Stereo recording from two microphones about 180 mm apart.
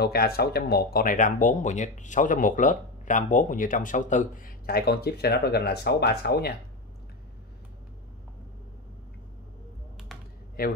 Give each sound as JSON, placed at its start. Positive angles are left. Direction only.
{"t": 0.0, "sound": "speech", "side_deg": 60}
{"t": 10.6, "sound": "a man's voice", "side_deg": 55}